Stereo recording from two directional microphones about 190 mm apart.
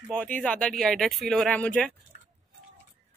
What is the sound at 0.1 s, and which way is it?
Speech, 5° left (ahead or behind).